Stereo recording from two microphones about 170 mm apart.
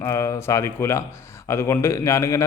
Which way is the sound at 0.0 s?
20° left (ahead or behind).